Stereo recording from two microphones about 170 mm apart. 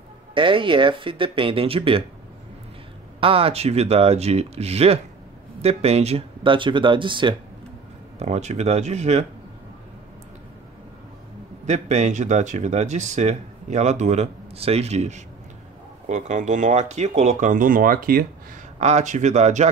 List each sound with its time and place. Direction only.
0.3 s speech: 30° right (ahead or behind)
3.2 s speech: 35° right (ahead or behind)
8.2 s speech: 40° right (ahead or behind)
11.6 s speech: 45° right (ahead or behind)
18.8 s speech: 40° right (ahead or behind)